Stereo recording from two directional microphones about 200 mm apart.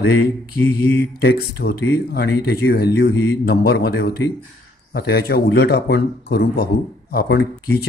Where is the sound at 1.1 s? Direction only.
55° left (ahead or behind).